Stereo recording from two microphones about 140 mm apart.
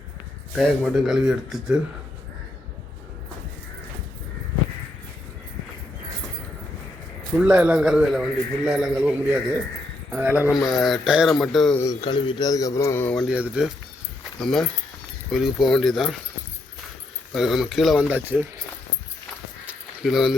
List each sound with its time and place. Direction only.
0.5 s a man's voice: centre (ahead or behind)
7.3 s a man's voice: 10° right (ahead or behind)
10.7 s a man's voice: centre (ahead or behind)
12.0 s a man's voice: 30° left (ahead or behind)
13.1 s a man's voice: 5° right (ahead or behind)
17.3 s a man's voice: centre (ahead or behind)
19.6 s a sound: centre (ahead or behind)